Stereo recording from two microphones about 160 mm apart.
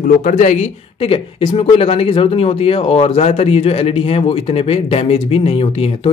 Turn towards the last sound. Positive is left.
turn(degrees=35)  # may be behind; listen again after turning